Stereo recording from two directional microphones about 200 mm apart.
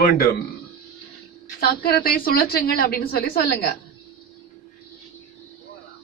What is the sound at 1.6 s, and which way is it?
A man's voice, 50° left (ahead or behind).